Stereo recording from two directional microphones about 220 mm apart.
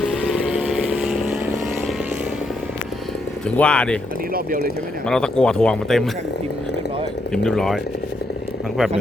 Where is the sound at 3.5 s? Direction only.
5° left (ahead or behind).